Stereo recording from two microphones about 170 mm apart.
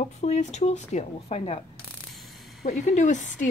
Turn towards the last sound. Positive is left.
turn(degrees=45)  # may be behind; listen again after turning